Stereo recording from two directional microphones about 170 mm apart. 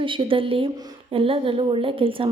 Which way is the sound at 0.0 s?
30° right (ahead or behind).